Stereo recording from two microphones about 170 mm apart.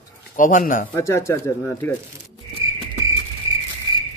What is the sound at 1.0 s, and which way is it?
Speech, 15° left (ahead or behind).